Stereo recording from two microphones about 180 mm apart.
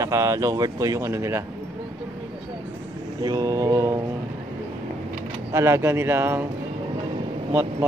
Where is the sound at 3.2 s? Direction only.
20° right (ahead or behind).